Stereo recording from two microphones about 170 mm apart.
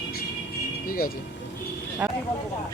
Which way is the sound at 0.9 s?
60° left (ahead or behind).